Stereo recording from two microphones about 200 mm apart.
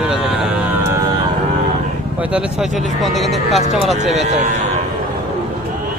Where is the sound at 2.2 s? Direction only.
5° right (ahead or behind).